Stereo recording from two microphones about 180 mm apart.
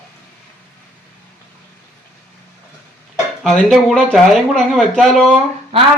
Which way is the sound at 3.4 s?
Centre (ahead or behind).